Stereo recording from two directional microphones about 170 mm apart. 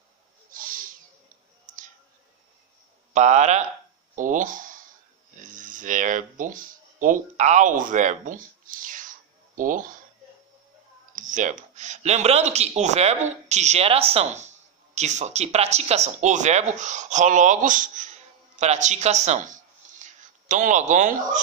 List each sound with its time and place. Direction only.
0.5 s owl: 55° right (ahead or behind)
3.1 s speech: 40° right (ahead or behind)
11.1 s speech: 50° right (ahead or behind)
19.8 s a sound: 50° right (ahead or behind)
20.2 s speech: 50° right (ahead or behind)